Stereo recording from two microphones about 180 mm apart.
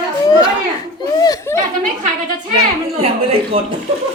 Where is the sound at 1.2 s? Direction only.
20° left (ahead or behind).